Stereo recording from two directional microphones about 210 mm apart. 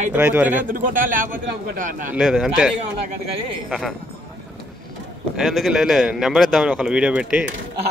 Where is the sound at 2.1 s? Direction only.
5° right (ahead or behind).